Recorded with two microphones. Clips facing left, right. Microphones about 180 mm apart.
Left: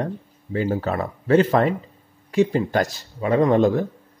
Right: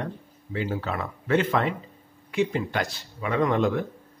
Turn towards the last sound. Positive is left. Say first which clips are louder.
# left 6 dB
turn(degrees=35)  # may be behind; listen again after turning